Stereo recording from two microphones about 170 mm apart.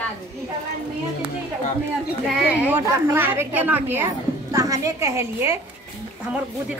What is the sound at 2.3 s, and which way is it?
A woman's voice, 5° right (ahead or behind).